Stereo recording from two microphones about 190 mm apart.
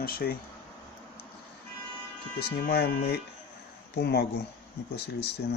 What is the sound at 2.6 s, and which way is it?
Speech, 55° left (ahead or behind).